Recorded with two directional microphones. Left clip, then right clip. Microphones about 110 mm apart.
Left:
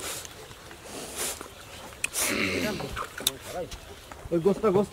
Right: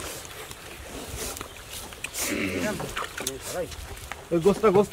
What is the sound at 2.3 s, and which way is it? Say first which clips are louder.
Speech: even; 65° left (ahead or behind).